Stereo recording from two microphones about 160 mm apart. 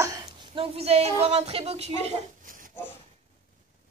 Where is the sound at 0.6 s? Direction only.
40° right (ahead or behind).